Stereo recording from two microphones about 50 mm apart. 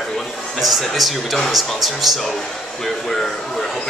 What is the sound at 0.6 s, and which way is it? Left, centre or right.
Speech, centre.